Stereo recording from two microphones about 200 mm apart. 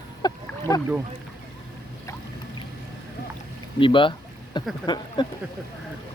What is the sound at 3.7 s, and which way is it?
Speech, 25° left (ahead or behind).